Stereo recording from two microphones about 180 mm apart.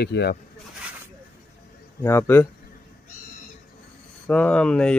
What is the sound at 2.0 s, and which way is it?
Speech, 15° left (ahead or behind).